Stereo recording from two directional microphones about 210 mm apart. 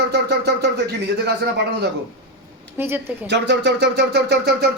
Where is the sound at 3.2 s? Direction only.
55° right (ahead or behind).